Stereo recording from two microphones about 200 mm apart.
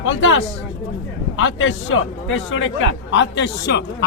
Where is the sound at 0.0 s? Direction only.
75° left (ahead or behind).